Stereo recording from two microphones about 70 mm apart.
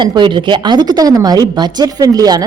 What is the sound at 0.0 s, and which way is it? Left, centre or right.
A woman's voice, right.